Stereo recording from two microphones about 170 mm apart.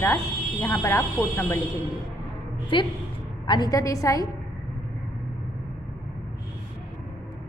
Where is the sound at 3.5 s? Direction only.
25° left (ahead or behind).